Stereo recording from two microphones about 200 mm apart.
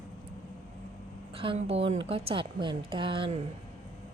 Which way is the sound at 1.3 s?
25° right (ahead or behind).